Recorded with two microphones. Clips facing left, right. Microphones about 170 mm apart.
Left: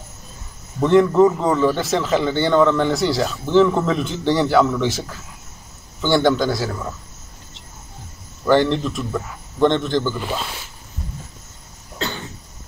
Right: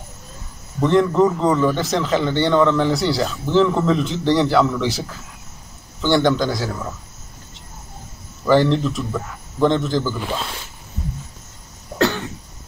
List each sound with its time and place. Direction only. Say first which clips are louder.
0.7 s a man's voice: left 2 dB; 5° left (ahead or behind)
8.5 s a man's voice: right 1 dB; centre (ahead or behind)
12.0 s cough: right 9 dB; 70° right (ahead or behind)